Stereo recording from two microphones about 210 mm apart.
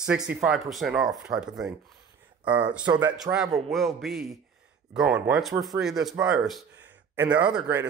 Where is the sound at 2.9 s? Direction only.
20° right (ahead or behind).